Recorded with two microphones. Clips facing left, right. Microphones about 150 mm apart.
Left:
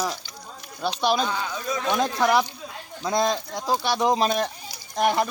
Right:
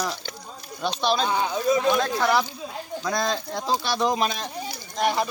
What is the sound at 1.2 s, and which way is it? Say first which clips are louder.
Speech: right 4 dB; 20° right (ahead or behind).